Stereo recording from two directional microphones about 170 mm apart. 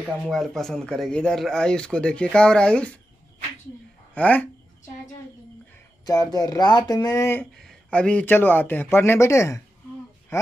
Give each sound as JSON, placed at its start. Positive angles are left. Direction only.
{"t": 0.3, "sound": "speech", "side_deg": 0}
{"t": 4.1, "sound": "speech", "side_deg": 10}
{"t": 6.0, "sound": "a man's voice", "side_deg": 20}